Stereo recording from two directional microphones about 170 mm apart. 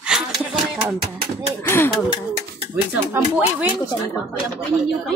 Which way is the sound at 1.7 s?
15° left (ahead or behind).